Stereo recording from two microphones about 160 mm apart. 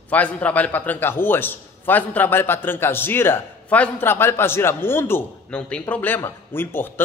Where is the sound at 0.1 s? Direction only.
10° left (ahead or behind).